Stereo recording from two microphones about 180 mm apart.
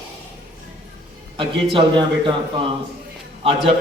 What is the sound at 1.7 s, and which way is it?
A man's voice, 25° right (ahead or behind).